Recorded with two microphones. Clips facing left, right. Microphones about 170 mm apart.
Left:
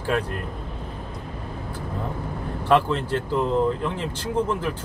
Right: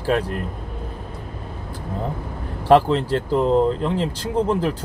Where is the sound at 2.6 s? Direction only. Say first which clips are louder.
Right 5 dB; 35° right (ahead or behind).